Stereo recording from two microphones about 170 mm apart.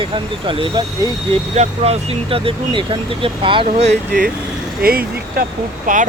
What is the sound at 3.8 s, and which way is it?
Speech, 65° right (ahead or behind).